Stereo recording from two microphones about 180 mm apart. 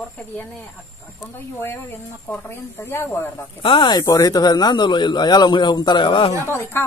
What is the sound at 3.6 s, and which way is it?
Speech, 25° left (ahead or behind).